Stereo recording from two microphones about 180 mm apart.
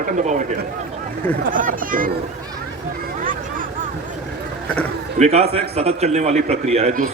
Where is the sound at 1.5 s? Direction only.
50° right (ahead or behind).